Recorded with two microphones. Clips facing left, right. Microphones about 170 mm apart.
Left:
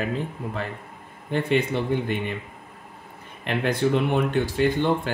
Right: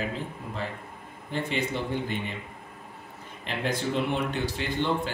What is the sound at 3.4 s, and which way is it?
Speech, 60° left (ahead or behind).